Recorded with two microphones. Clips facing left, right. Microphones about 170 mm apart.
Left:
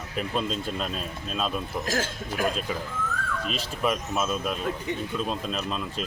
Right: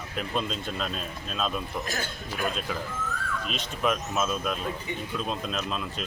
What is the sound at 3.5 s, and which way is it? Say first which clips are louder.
Speech: even; centre (ahead or behind).